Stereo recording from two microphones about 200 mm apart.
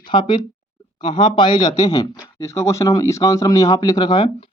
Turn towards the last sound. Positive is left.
turn(degrees=25)  # may be behind; listen again after turning